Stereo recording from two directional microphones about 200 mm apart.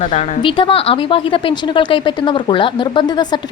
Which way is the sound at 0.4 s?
25° left (ahead or behind).